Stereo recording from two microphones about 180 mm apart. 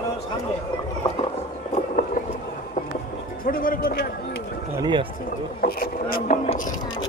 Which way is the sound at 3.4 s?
50° left (ahead or behind).